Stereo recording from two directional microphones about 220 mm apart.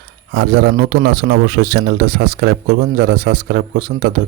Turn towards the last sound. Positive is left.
turn(degrees=-45)  # may be behind; listen again after turning